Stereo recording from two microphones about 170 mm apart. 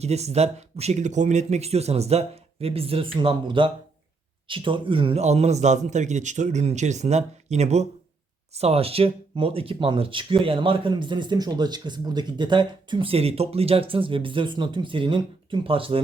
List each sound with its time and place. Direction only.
0.0 s speech: 40° right (ahead or behind)